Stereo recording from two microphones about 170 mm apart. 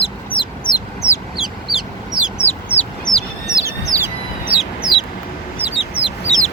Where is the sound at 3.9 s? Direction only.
20° right (ahead or behind).